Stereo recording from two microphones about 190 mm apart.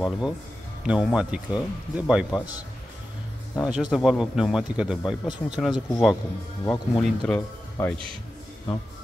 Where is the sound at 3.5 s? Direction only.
5° right (ahead or behind).